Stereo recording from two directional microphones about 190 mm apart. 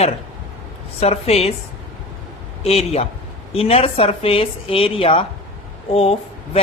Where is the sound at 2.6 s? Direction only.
35° left (ahead or behind).